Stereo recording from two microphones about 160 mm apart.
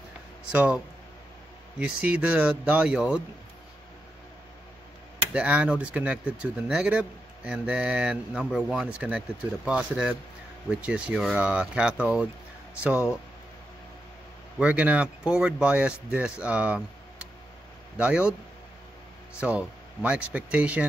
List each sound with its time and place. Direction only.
0.5 s speech: 10° right (ahead or behind)
1.8 s speech: 10° right (ahead or behind)
5.3 s speech: 10° right (ahead or behind)
14.6 s speech: 10° right (ahead or behind)
17.9 s speech: 5° right (ahead or behind)
19.4 s speech: 10° right (ahead or behind)